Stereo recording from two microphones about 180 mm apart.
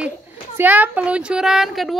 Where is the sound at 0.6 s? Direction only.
10° right (ahead or behind).